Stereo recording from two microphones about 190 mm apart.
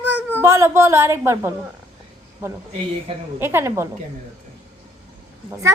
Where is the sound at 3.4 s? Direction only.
10° right (ahead or behind).